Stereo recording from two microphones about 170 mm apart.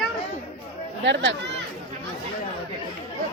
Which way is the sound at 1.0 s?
90° right.